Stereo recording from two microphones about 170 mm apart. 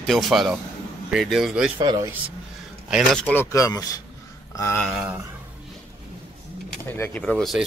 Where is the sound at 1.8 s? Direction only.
25° right (ahead or behind).